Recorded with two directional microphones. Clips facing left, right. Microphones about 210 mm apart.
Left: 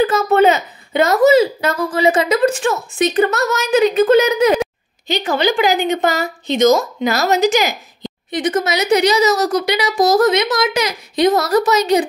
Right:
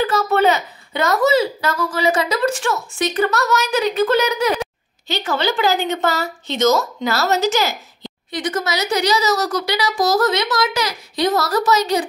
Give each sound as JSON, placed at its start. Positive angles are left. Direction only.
{"t": 0.0, "sound": "a woman's voice", "side_deg": 20}